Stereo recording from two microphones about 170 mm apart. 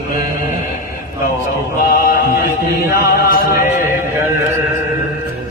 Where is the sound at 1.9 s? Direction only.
55° left (ahead or behind).